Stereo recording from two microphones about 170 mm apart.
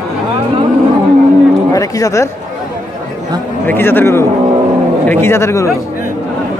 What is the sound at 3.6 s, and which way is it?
A man's voice, 10° left (ahead or behind).